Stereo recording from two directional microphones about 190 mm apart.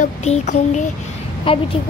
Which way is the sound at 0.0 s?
40° left (ahead or behind).